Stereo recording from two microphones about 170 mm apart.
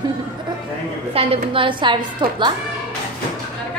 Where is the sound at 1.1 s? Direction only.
35° right (ahead or behind).